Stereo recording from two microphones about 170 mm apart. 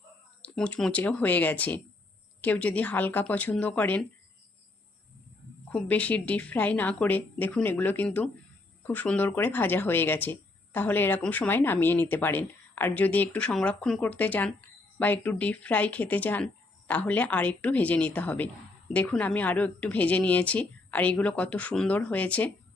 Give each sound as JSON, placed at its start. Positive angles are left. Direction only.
{"t": 0.4, "sound": "speech", "side_deg": 5}
{"t": 5.7, "sound": "speech", "side_deg": 10}